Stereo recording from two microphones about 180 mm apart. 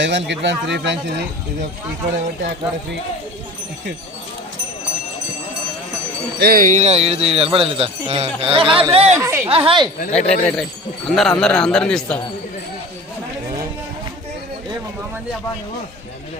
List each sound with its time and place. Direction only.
0.0 s speech: 80° right
6.4 s speech: 55° right (ahead or behind); by 9.1 s 35° right (ahead or behind)
9.1 s speech: 15° right (ahead or behind)
9.5 s speech: 30° right (ahead or behind)
10.1 s speech: 5° left (ahead or behind)